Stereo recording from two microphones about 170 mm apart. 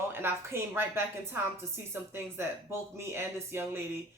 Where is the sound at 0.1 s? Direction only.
15° right (ahead or behind).